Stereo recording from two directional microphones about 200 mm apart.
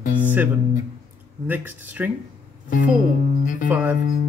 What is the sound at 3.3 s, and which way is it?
Speech, 40° left (ahead or behind).